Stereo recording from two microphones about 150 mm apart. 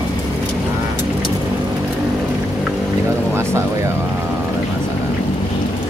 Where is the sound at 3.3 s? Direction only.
15° right (ahead or behind).